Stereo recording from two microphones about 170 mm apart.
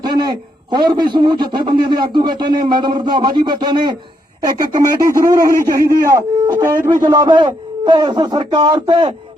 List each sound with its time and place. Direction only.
0.0 s a man's voice: 25° right (ahead or behind)
5.5 s a man's voice: 55° right (ahead or behind)
6.1 s speech: 20° right (ahead or behind)
7.1 s a man's voice: 25° right (ahead or behind)